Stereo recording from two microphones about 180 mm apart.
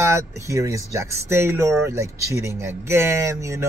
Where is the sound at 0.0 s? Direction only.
15° right (ahead or behind).